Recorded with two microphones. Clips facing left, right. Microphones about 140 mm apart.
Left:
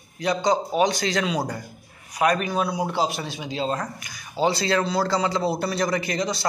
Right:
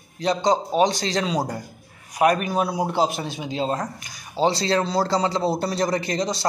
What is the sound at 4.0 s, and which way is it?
Speech, 35° right (ahead or behind).